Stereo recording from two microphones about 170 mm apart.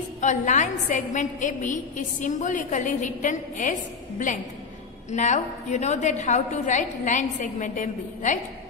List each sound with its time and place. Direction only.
0.2 s a woman's voice: 45° left (ahead or behind)
5.1 s a woman's voice: 45° left (ahead or behind)